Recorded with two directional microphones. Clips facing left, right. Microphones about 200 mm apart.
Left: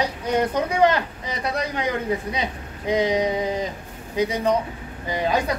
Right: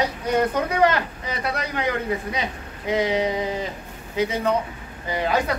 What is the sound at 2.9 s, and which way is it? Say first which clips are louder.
Speech: left 1 dB; 15° left (ahead or behind).